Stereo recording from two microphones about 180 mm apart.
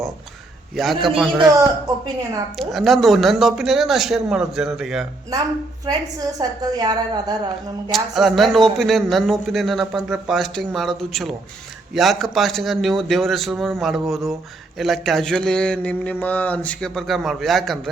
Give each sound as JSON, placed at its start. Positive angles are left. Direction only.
{"t": 0.8, "sound": "speech", "side_deg": 0}
{"t": 1.4, "sound": "speech", "side_deg": -20}
{"t": 2.6, "sound": "speech", "side_deg": 0}
{"t": 5.8, "sound": "a woman's voice", "side_deg": -20}
{"t": 7.9, "sound": "speech", "side_deg": 0}